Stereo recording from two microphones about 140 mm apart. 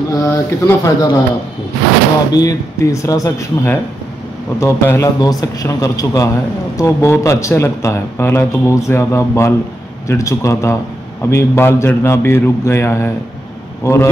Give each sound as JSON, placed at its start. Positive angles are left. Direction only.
{"t": 0.1, "sound": "speech", "side_deg": 20}
{"t": 2.3, "sound": "a man's voice", "side_deg": 25}